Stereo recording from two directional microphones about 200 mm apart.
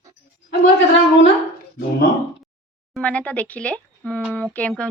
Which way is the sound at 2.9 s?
5° left (ahead or behind).